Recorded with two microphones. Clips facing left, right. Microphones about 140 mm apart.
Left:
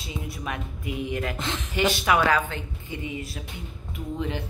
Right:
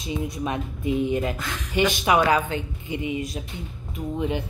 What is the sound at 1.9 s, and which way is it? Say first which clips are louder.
A woman's voice: right 1 dB; 15° right (ahead or behind).